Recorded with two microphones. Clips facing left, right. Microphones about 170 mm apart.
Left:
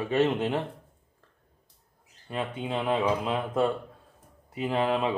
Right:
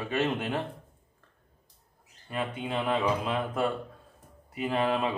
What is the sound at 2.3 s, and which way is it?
Speech, 20° left (ahead or behind).